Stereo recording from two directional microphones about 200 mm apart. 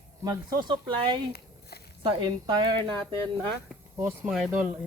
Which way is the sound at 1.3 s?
50° left (ahead or behind).